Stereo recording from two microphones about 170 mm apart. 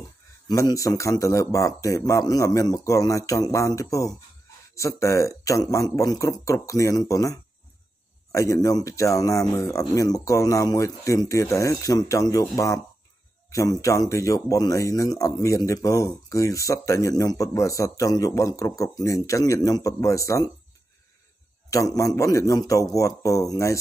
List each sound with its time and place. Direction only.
0.5 s speech: 20° left (ahead or behind)
21.6 s speech: 20° left (ahead or behind)